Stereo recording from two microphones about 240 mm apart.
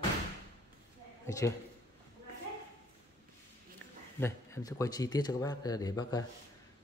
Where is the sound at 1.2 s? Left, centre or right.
Centre.